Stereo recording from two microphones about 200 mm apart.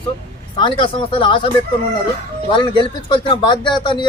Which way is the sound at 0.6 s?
25° left (ahead or behind).